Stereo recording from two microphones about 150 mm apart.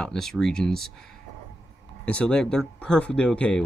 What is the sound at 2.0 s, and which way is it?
Speech, 10° left (ahead or behind).